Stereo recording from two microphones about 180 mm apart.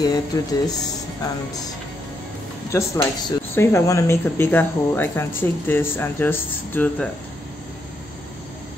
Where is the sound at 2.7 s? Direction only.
15° left (ahead or behind).